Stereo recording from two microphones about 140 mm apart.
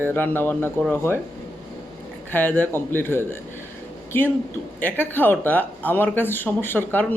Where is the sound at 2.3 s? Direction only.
15° left (ahead or behind).